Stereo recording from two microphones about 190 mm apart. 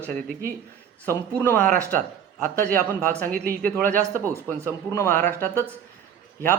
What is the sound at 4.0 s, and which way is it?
Speech, 15° right (ahead or behind).